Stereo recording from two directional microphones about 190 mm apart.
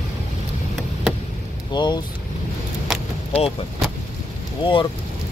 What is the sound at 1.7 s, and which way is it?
Speech, 25° left (ahead or behind).